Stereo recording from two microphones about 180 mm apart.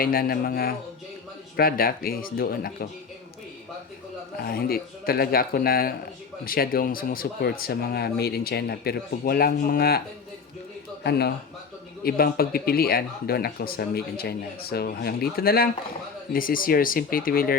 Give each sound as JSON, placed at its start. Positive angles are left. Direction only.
{"t": 0.0, "sound": "speech", "side_deg": 55}
{"t": 4.4, "sound": "speech", "side_deg": 60}
{"t": 11.0, "sound": "speech", "side_deg": 65}